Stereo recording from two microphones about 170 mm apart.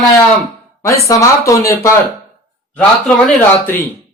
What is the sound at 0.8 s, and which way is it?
Speech, 20° left (ahead or behind).